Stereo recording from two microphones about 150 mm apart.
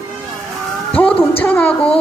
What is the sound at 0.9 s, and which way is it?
Speech, 10° left (ahead or behind).